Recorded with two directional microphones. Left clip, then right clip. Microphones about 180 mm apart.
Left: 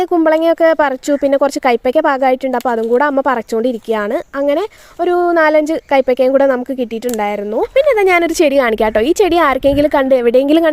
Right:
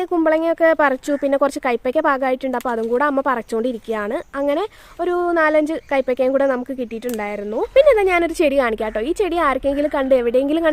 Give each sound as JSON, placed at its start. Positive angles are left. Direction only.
{"t": 0.1, "sound": "speech", "side_deg": 30}
{"t": 7.8, "sound": "a woman's voice", "side_deg": 45}